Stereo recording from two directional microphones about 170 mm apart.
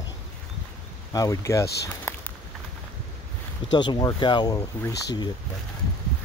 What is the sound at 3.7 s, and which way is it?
Speech, 25° left (ahead or behind).